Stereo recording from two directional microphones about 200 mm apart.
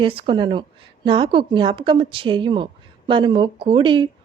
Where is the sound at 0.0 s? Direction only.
25° right (ahead or behind).